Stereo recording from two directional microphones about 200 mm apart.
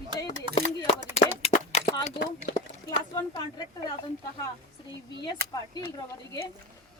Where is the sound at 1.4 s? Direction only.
30° left (ahead or behind).